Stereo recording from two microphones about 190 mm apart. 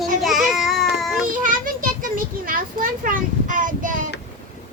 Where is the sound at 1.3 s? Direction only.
45° right (ahead or behind).